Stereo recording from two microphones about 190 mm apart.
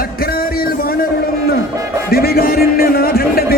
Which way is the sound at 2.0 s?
55° left (ahead or behind).